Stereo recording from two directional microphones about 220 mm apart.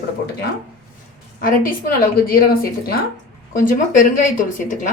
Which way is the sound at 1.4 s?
40° left (ahead or behind).